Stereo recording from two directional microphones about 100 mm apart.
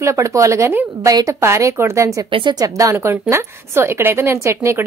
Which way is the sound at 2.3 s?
60° right (ahead or behind).